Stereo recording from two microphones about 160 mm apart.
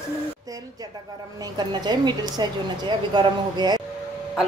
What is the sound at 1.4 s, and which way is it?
A woman's voice, 25° right (ahead or behind).